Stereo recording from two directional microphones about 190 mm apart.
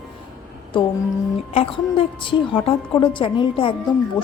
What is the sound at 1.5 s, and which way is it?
A woman's voice, 30° left (ahead or behind).